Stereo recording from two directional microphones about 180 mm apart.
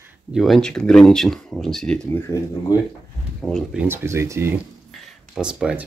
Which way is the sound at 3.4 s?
Centre (ahead or behind).